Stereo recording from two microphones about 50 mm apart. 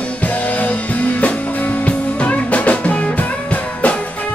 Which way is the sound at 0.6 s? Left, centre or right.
Left.